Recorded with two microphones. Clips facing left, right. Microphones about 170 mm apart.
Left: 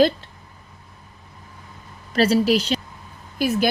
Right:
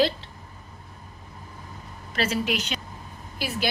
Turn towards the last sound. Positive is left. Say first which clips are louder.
# left 9 dB
turn(degrees=45)  # may be behind; listen again after turning